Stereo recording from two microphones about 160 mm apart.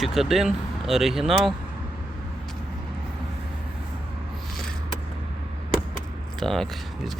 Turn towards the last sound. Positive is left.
turn(degrees=0)  # may be behind; listen again after turning